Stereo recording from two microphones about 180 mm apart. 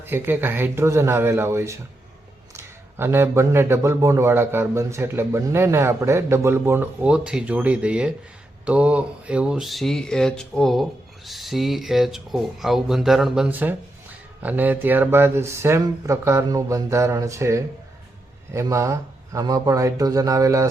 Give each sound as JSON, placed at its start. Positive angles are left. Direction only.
{"t": 0.0, "sound": "speech", "side_deg": -10}